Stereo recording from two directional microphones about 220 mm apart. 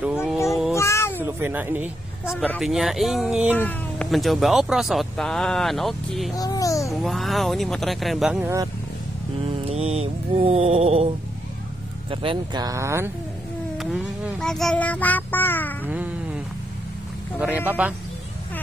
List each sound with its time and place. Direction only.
0.5 s meow: centre (ahead or behind)
0.7 s a sound: 10° left (ahead or behind)
1.2 s speech: 10° right (ahead or behind)
2.2 s speech: 5° left (ahead or behind)
3.5 s speech: 5° left (ahead or behind)
6.3 s a child's voice: 15° left (ahead or behind)
6.9 s speech: centre (ahead or behind)
9.7 s music: 30° right (ahead or behind)
12.1 s speech: 25° right (ahead or behind)
13.7 s insect: centre (ahead or behind)
15.9 s cat: 5° right (ahead or behind)
17.4 s speech: 5° right (ahead or behind)